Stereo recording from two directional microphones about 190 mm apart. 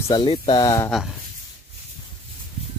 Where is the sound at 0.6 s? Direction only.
20° left (ahead or behind).